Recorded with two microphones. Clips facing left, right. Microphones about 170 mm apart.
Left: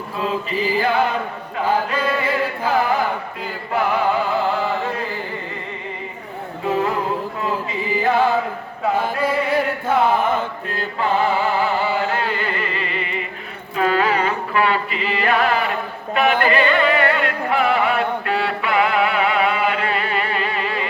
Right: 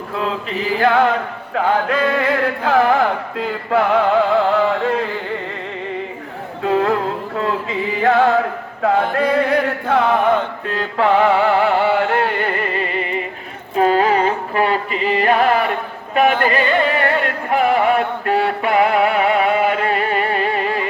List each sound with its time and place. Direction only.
0.2 s chant: 70° right (ahead or behind); by 5.0 s 90° right
6.7 s music: 70° right (ahead or behind)
8.0 s chant: 75° right (ahead or behind)
8.8 s music: 75° right (ahead or behind); by 20.8 s 45° right (ahead or behind)